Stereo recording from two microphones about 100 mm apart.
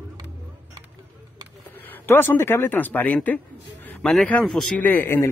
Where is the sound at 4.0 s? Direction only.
Centre (ahead or behind).